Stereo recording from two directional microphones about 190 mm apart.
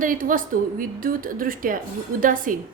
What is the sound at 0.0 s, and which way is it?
A woman's voice, 45° right (ahead or behind).